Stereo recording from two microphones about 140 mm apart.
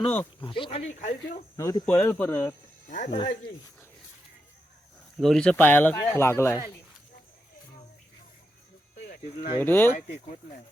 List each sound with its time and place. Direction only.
0.4 s speech: 35° left (ahead or behind)
0.8 s speech: 60° left (ahead or behind)
1.5 s speech: 25° left (ahead or behind)
1.9 s speech: 10° left (ahead or behind)
2.9 s speech: 60° left (ahead or behind)
5.2 s speech: 5° left (ahead or behind); by 6.6 s 20° left (ahead or behind)
9.2 s speech: 45° left (ahead or behind)
9.6 s speech: 15° left (ahead or behind)